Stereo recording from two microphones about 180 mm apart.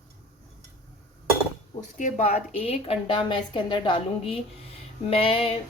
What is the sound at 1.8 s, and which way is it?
A woman's voice, 45° left (ahead or behind).